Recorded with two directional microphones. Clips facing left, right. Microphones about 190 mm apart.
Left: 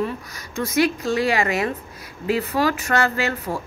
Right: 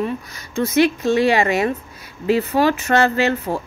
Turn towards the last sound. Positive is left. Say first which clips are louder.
# right 5 dB
turn(degrees=-25)  # may be behind; listen again after turning